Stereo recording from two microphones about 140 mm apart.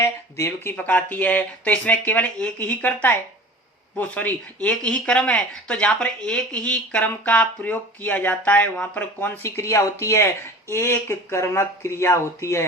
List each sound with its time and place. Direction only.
0.0 s speech: 20° left (ahead or behind)